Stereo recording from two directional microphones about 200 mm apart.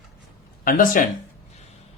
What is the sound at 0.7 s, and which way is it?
Speech, 45° left (ahead or behind).